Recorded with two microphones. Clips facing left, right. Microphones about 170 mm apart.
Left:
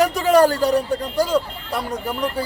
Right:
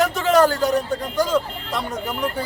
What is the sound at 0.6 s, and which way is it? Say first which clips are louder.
Speech: left 2 dB; 10° left (ahead or behind).